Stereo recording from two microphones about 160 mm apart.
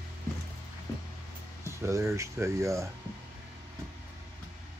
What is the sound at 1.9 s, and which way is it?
Speech, 20° right (ahead or behind).